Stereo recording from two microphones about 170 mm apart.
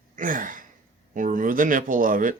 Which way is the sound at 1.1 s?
50° right (ahead or behind).